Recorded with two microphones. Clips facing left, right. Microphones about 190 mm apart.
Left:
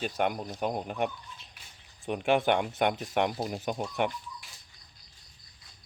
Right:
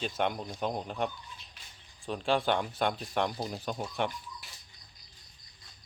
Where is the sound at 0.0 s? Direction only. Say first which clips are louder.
Left 2 dB; 10° left (ahead or behind).